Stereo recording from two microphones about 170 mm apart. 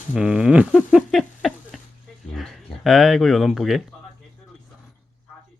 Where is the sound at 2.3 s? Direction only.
Centre (ahead or behind).